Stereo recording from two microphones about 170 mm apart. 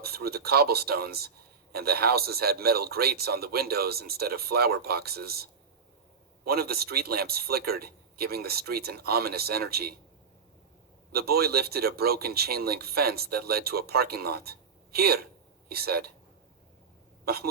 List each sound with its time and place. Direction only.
0.0 s speech: 65° right (ahead or behind)
11.1 s speech: 65° right (ahead or behind)
17.2 s speech: 65° right (ahead or behind)